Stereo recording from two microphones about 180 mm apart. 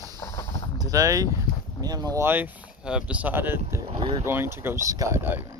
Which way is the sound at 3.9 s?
30° right (ahead or behind).